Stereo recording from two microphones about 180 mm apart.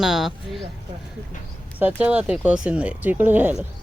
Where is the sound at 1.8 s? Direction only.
5° right (ahead or behind).